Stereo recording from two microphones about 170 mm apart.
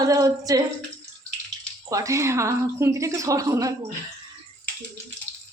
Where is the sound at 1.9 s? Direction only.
20° right (ahead or behind).